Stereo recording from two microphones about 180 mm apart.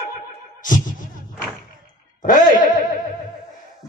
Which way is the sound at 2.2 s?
50° left (ahead or behind).